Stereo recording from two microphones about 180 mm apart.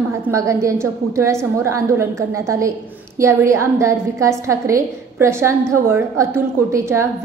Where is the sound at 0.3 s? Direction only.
15° right (ahead or behind).